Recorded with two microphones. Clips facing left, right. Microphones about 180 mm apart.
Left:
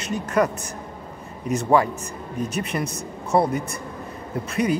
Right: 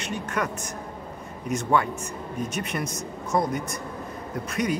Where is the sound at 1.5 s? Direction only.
35° left (ahead or behind).